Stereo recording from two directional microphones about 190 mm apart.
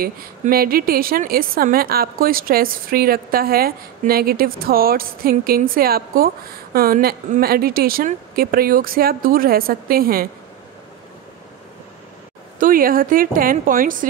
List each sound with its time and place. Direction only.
0.0 s a woman's voice: 50° right (ahead or behind)
12.5 s a woman's voice: 45° right (ahead or behind)